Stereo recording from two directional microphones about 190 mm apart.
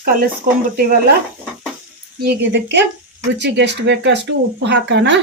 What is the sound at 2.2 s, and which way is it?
Speech, 60° right (ahead or behind).